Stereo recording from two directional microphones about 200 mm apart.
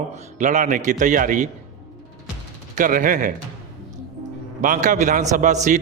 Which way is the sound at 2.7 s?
45° right (ahead or behind).